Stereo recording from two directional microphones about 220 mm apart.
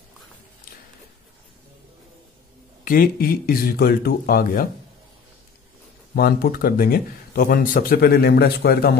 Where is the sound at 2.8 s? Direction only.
40° left (ahead or behind).